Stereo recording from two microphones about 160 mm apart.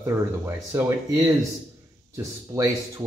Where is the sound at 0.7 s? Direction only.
15° right (ahead or behind).